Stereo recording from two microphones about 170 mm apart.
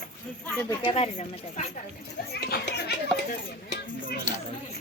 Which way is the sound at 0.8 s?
35° left (ahead or behind).